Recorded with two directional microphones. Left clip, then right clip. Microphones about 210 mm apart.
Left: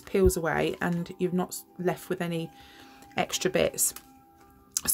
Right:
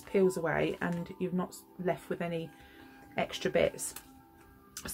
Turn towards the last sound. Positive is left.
turn(degrees=50)  # may be behind; listen again after turning